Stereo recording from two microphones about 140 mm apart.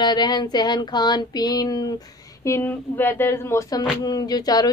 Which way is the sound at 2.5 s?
15° left (ahead or behind).